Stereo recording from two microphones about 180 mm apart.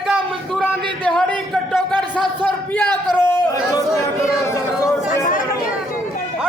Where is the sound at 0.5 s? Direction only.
5° left (ahead or behind).